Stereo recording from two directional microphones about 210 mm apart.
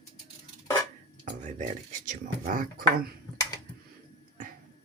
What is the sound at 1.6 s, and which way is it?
Speech, 40° right (ahead or behind).